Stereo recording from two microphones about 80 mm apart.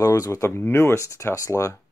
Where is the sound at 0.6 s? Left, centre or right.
Left.